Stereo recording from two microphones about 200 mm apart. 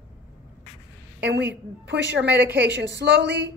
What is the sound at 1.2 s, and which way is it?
A woman's voice, 55° right (ahead or behind).